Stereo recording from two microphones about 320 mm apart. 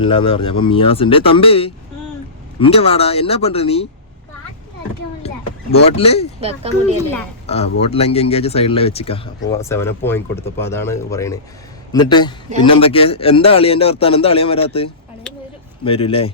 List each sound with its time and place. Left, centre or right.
0.0 s speech: centre
6.0 s speech: centre
6.4 s speech: centre
7.4 s a man's voice: centre